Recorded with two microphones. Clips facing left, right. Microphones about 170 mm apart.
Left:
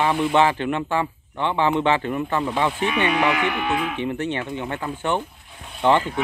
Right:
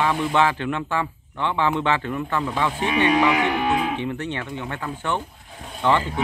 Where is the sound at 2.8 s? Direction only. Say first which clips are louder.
Right 4 dB; 35° right (ahead or behind).